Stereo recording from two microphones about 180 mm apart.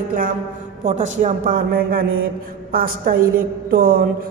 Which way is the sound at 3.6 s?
60° right (ahead or behind).